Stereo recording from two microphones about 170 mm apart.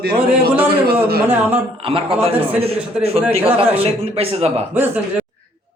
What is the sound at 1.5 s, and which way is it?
Speech, 35° right (ahead or behind).